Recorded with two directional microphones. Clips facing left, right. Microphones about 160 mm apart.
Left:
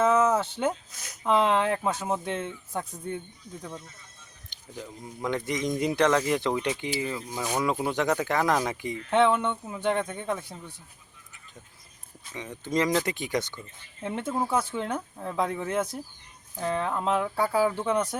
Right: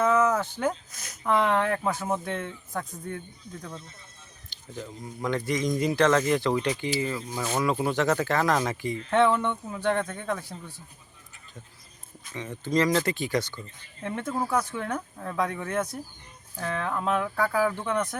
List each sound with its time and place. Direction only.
0.0 s a sound: 25° left (ahead or behind)
0.7 s speech: 15° left (ahead or behind)
3.6 s speech: 10° left (ahead or behind)
4.4 s a sound: 15° left (ahead or behind)
5.2 s speech: 20° left (ahead or behind)
12.3 s speech: 15° left (ahead or behind)